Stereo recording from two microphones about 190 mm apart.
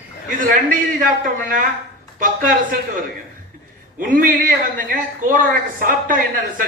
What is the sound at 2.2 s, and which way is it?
Speech, 45° right (ahead or behind).